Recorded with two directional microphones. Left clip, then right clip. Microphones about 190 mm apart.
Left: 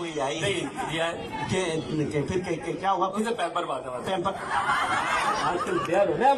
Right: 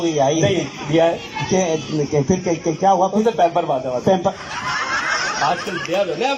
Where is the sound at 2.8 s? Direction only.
30° right (ahead or behind).